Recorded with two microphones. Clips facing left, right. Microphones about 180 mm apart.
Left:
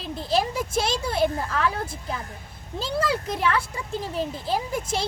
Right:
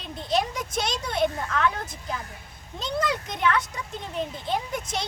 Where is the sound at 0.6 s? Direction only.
30° left (ahead or behind).